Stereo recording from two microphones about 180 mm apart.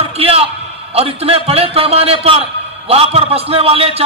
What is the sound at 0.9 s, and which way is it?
A man's voice, 30° right (ahead or behind).